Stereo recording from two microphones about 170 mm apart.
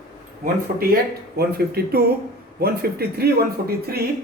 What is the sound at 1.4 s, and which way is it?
Speech, 65° right (ahead or behind).